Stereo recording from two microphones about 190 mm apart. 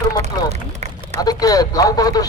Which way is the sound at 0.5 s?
35° right (ahead or behind).